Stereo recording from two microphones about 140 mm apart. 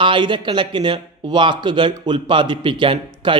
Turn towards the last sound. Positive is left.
turn(degrees=-35)  # may be behind; listen again after turning